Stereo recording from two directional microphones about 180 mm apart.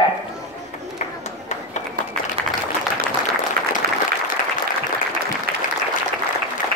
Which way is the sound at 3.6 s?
55° right (ahead or behind).